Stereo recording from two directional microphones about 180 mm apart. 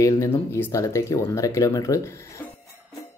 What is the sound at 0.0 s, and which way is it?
Speech, 15° left (ahead or behind).